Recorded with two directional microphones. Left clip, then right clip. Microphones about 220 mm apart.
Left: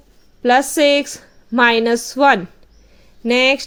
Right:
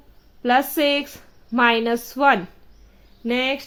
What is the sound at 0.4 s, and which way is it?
A woman's voice, 10° left (ahead or behind).